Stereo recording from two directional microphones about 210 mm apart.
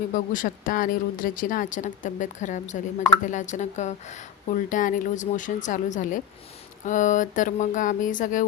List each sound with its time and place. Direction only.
0.1 s speech: 40° left (ahead or behind)